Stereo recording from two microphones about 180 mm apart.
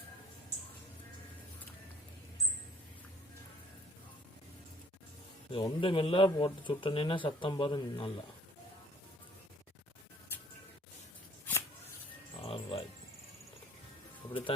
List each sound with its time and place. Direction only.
5.5 s speech: 30° left (ahead or behind)
12.4 s music: 30° left (ahead or behind)
14.3 s music: 30° left (ahead or behind)